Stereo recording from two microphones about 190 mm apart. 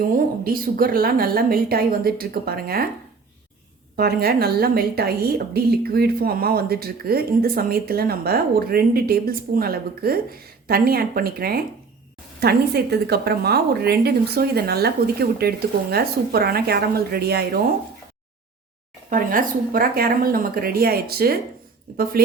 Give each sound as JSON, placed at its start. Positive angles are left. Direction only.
{"t": 0.4, "sound": "a woman's voice", "side_deg": -50}
{"t": 3.9, "sound": "a woman's voice", "side_deg": -55}
{"t": 19.1, "sound": "a woman's voice", "side_deg": -45}